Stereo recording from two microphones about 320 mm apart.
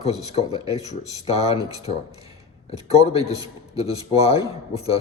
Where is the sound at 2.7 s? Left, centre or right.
Centre.